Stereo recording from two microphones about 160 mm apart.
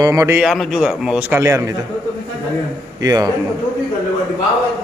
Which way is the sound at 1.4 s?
20° right (ahead or behind).